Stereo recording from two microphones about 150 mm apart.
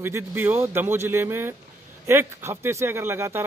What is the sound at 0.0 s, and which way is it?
Speech, 15° right (ahead or behind).